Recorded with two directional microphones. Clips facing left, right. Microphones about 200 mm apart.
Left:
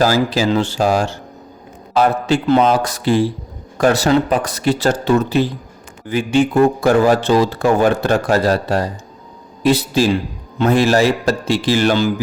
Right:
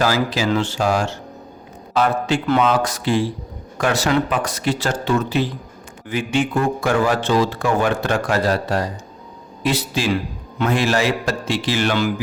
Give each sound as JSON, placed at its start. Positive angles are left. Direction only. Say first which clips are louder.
{"t": 0.0, "sound": "a man's voice", "louder": "left 4 dB", "side_deg": 35}